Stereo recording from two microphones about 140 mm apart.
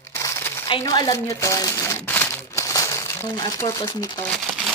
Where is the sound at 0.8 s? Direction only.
25° left (ahead or behind).